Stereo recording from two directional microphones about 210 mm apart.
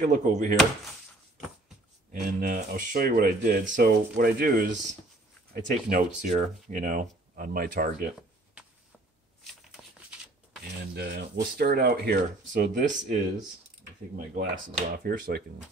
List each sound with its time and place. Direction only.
0.0 s speech: 35° right (ahead or behind)
2.1 s speech: 40° right (ahead or behind)
11.0 s speech: 50° right (ahead or behind)